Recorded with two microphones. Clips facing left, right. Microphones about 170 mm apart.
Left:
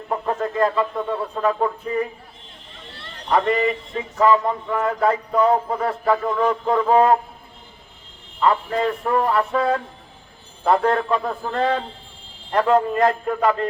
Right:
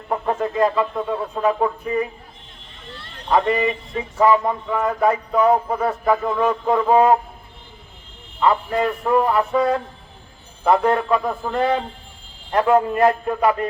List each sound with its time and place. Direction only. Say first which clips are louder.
0.1 s speech: right 2 dB; 20° right (ahead or behind)
3.3 s speech: right 1 dB; 15° right (ahead or behind)
8.4 s speech: right 1 dB; 10° right (ahead or behind)
10.7 s speech: right 1 dB; 15° right (ahead or behind)